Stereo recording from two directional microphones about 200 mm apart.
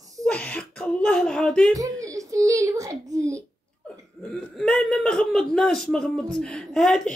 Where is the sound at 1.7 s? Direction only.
15° right (ahead or behind).